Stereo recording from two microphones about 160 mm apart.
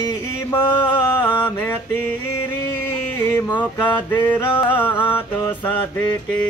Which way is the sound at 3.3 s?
10° left (ahead or behind).